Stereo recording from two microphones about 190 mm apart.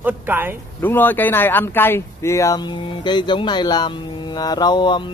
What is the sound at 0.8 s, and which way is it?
A man's voice, 10° left (ahead or behind).